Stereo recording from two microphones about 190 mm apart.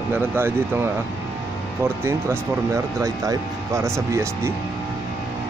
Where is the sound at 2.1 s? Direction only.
15° right (ahead or behind).